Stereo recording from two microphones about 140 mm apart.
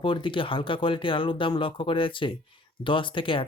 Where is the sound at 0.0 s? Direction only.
35° left (ahead or behind).